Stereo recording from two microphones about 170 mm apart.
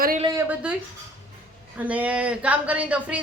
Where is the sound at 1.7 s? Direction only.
10° right (ahead or behind).